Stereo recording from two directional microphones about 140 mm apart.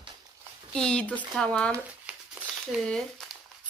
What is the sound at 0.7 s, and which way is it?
Speech, 5° left (ahead or behind).